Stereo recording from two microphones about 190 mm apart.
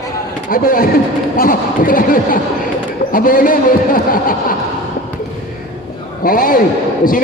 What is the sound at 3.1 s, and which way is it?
A man's voice, 45° left (ahead or behind).